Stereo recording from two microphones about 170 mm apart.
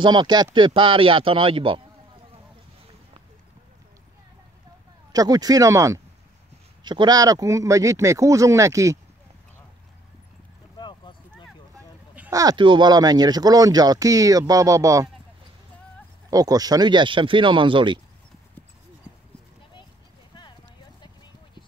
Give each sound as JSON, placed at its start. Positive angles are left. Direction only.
{"t": 0.0, "sound": "speech", "side_deg": -25}
{"t": 5.1, "sound": "speech", "side_deg": -20}
{"t": 10.8, "sound": "clip-clop", "side_deg": 25}
{"t": 12.3, "sound": "speech", "side_deg": -20}
{"t": 16.3, "sound": "speech", "side_deg": -20}